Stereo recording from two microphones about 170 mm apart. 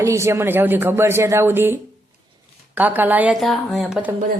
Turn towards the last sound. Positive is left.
turn(degrees=0)  # may be behind; listen again after turning